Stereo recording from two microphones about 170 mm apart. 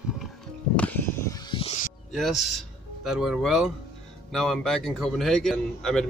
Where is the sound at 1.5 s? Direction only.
35° left (ahead or behind).